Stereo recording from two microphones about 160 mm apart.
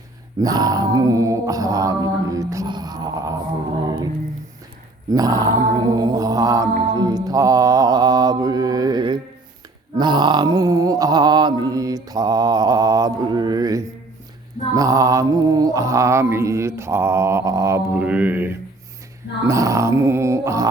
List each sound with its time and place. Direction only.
0.3 s mantra: 20° right (ahead or behind)